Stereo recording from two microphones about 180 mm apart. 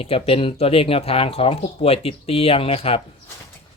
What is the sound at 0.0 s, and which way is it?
Speech, 30° left (ahead or behind).